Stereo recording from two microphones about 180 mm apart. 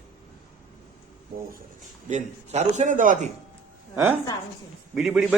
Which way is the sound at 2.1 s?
40° right (ahead or behind).